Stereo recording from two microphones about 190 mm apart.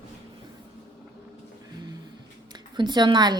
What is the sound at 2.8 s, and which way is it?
Speech, 25° right (ahead or behind).